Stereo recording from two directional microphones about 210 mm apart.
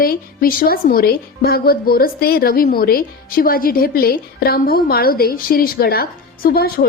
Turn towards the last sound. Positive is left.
turn(degrees=45)  # may be behind; listen again after turning